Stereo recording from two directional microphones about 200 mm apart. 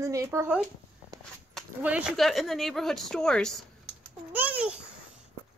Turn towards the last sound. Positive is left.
turn(degrees=-5)  # may be behind; listen again after turning